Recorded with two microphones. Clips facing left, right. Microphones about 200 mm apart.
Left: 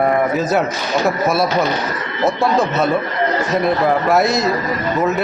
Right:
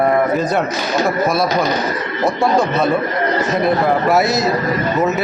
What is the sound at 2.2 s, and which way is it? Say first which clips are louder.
A man's voice: even; centre (ahead or behind).